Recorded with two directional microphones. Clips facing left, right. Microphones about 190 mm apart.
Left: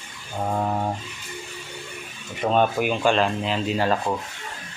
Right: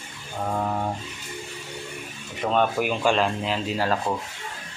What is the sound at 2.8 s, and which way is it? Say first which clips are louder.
Speech: left 1 dB; centre (ahead or behind).